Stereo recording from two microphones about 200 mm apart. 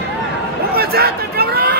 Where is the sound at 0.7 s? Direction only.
50° right (ahead or behind).